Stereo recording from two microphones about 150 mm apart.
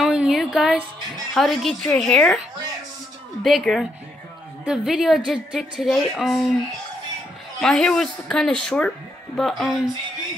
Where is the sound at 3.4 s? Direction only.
Centre (ahead or behind).